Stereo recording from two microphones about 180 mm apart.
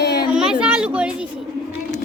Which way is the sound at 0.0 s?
65° left (ahead or behind).